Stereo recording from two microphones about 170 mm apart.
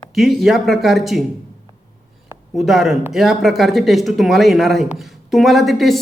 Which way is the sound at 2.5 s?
Centre (ahead or behind).